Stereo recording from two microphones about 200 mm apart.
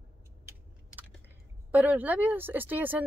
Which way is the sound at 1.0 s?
10° right (ahead or behind).